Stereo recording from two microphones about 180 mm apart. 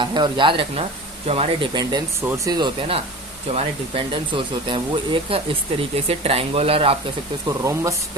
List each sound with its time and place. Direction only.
0.0 s speech: 25° right (ahead or behind)
7.4 s speech: 15° right (ahead or behind)